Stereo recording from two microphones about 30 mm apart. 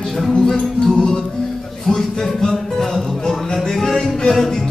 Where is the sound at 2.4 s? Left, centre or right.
Centre.